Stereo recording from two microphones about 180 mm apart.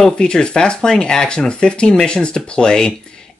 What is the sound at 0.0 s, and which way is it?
Speech, 5° left (ahead or behind).